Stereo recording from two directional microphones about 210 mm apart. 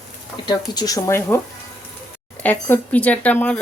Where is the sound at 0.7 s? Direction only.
20° left (ahead or behind).